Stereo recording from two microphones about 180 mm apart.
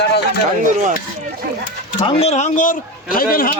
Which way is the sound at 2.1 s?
35° left (ahead or behind).